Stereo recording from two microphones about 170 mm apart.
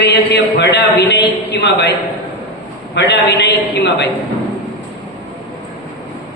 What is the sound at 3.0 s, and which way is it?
A woman's voice, 90° left.